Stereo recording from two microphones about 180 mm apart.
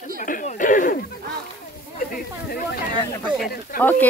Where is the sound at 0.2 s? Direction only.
45° left (ahead or behind).